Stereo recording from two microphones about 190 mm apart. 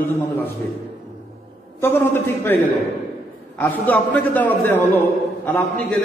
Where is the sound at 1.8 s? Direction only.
10° left (ahead or behind).